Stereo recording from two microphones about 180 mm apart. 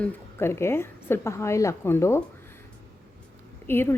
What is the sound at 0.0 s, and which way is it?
A woman's voice, 15° left (ahead or behind).